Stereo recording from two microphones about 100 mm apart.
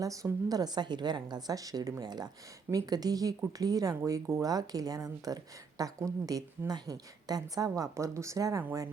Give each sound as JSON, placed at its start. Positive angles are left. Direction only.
{"t": 0.0, "sound": "speech", "side_deg": -35}